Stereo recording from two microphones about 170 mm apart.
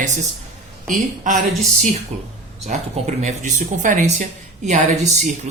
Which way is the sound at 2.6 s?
40° right (ahead or behind).